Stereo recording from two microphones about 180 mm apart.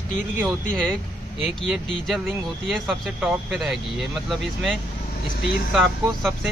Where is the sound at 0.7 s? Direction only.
5° left (ahead or behind).